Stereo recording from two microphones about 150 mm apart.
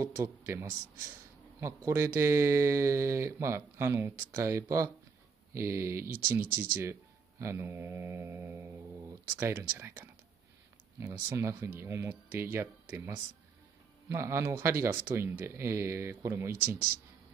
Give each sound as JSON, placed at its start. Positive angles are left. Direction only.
{"t": 0.0, "sound": "speech", "side_deg": -20}
{"t": 1.9, "sound": "speech", "side_deg": -15}